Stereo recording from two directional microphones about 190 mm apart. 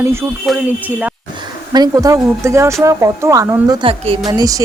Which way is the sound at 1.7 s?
20° right (ahead or behind).